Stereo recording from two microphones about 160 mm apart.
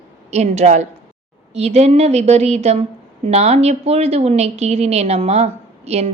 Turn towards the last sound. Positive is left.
turn(degrees=-40)  # may be behind; listen again after turning